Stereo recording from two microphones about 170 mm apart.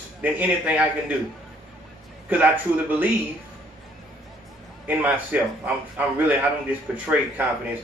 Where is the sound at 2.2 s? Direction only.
10° right (ahead or behind).